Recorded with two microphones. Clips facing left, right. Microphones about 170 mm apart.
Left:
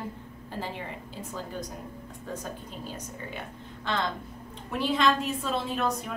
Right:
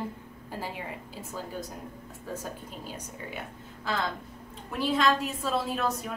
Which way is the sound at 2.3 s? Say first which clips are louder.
Even; 5° right (ahead or behind).